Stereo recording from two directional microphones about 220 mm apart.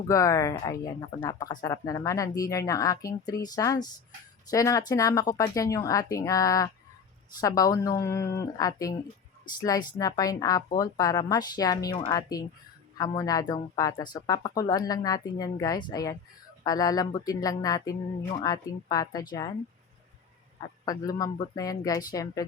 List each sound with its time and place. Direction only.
0.1 s speech: 15° left (ahead or behind)
20.8 s speech: 15° left (ahead or behind)